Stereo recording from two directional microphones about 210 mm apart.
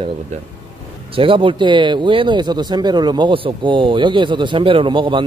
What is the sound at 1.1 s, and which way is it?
Speech, 25° right (ahead or behind).